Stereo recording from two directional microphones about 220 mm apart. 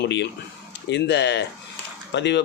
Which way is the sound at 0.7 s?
50° left (ahead or behind).